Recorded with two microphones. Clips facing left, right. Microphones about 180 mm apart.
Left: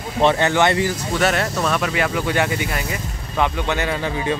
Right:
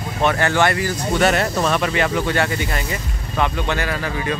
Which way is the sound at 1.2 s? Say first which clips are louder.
Right 2 dB; centre (ahead or behind).